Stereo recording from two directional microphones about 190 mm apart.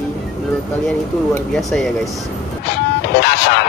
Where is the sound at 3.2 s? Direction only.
60° left (ahead or behind).